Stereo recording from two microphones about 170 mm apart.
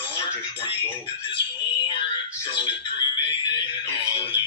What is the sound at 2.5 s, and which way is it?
Speech, 30° left (ahead or behind).